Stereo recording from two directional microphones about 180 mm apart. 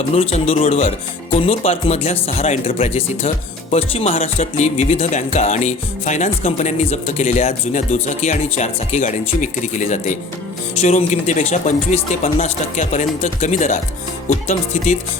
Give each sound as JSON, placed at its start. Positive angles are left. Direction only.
{"t": 0.1, "sound": "speech", "side_deg": 35}